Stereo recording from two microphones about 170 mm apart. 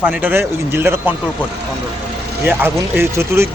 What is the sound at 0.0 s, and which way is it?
A man's voice, 10° right (ahead or behind).